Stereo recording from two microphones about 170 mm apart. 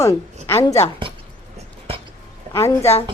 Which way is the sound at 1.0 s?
30° right (ahead or behind).